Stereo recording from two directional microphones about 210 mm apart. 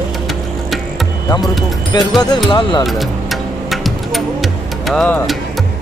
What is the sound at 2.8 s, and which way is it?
Music, centre (ahead or behind).